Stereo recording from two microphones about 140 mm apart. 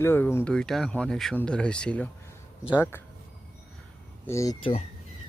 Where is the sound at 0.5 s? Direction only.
5° left (ahead or behind).